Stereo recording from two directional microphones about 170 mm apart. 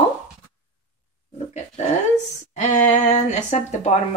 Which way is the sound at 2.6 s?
45° left (ahead or behind).